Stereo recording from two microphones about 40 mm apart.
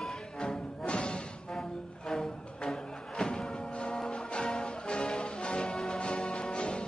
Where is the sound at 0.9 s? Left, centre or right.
Left.